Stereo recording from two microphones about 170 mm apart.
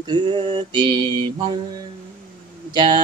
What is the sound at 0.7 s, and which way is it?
Mantra, 25° right (ahead or behind).